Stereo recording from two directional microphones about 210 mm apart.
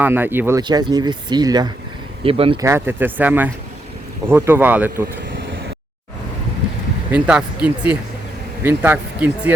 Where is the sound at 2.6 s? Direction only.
10° right (ahead or behind).